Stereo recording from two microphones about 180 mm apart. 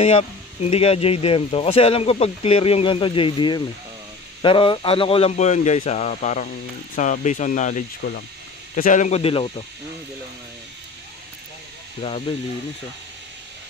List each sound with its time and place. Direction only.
0.0 s speech: 35° left (ahead or behind)
8.0 s speech: 65° left (ahead or behind)
8.7 s speech: 45° left (ahead or behind); by 9.7 s 30° left (ahead or behind)
12.0 s speech: 30° left (ahead or behind)